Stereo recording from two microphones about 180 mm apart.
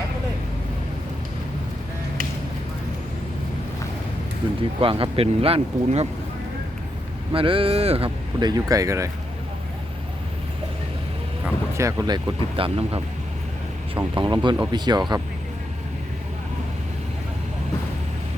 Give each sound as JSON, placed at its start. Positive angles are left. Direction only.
{"t": 4.8, "sound": "speech", "side_deg": -30}
{"t": 7.3, "sound": "speech", "side_deg": -30}
{"t": 11.8, "sound": "speech", "side_deg": -15}